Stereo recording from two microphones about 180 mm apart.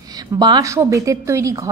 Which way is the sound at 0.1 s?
20° right (ahead or behind).